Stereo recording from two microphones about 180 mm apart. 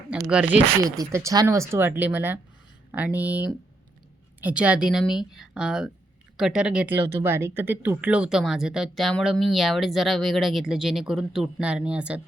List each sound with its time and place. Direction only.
0.1 s speech: 5° right (ahead or behind)
0.8 s speech: 20° right (ahead or behind)